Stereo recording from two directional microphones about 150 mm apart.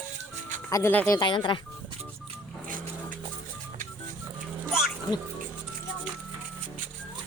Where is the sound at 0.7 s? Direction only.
15° left (ahead or behind).